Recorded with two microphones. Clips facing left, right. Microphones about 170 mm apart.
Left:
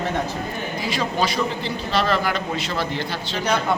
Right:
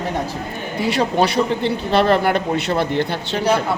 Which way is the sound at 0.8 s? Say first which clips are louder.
Right 7 dB; 65° right (ahead or behind).